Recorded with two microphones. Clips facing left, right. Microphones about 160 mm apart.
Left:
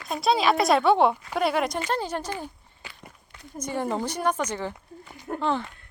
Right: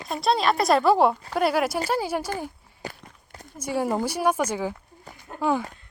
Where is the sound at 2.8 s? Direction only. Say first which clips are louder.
Right 10 dB; 40° right (ahead or behind).